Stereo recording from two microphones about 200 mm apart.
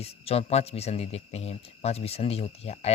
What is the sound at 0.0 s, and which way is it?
Speech, 30° left (ahead or behind).